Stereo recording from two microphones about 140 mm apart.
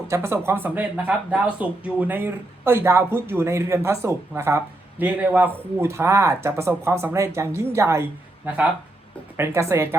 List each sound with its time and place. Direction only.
0.1 s speech: 20° right (ahead or behind)